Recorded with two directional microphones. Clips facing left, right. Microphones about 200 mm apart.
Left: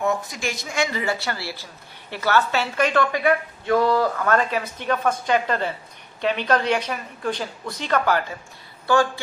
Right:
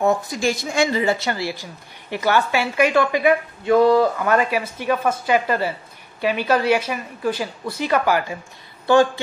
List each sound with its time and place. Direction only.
0.0 s speech: 30° right (ahead or behind); by 8.4 s 10° right (ahead or behind)
8.8 s speech: 20° right (ahead or behind)